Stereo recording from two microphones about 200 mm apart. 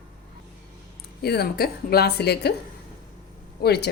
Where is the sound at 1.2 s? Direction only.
55° left (ahead or behind).